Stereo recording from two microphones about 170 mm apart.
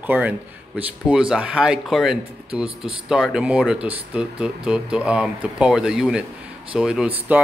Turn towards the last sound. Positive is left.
turn(degrees=-5)  # may be behind; listen again after turning